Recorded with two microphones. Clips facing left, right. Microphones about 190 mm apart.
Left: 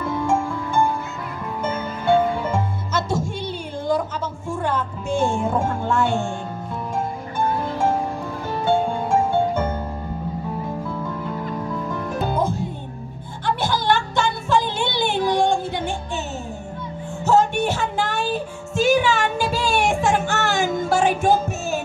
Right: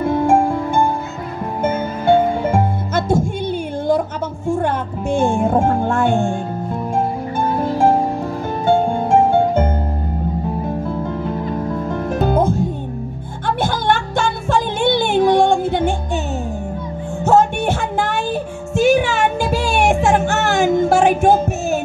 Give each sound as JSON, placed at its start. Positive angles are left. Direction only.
{"t": 0.0, "sound": "music", "side_deg": -60}
{"t": 4.6, "sound": "speech", "side_deg": -55}
{"t": 7.3, "sound": "music", "side_deg": -45}
{"t": 10.9, "sound": "music", "side_deg": -45}
{"t": 13.6, "sound": "music", "side_deg": -50}
{"t": 17.2, "sound": "child singing", "side_deg": -55}
{"t": 20.9, "sound": "music", "side_deg": -50}